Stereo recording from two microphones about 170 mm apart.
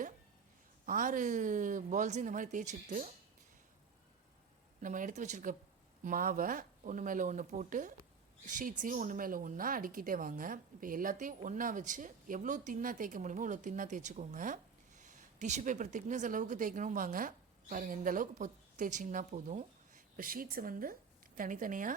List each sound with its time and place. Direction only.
0.9 s a woman's voice: 50° right (ahead or behind)
4.8 s a woman's voice: 50° right (ahead or behind)